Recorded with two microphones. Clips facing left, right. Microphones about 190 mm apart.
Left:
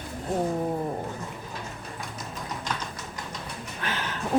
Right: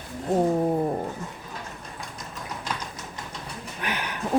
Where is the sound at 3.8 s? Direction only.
15° right (ahead or behind).